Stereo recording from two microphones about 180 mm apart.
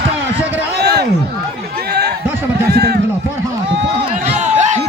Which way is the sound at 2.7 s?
65° right (ahead or behind).